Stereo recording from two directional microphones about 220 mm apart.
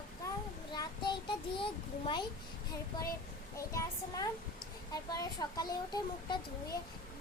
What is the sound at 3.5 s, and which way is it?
Speech, 15° left (ahead or behind).